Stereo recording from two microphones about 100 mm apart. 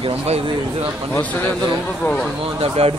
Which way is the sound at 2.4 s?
80° right.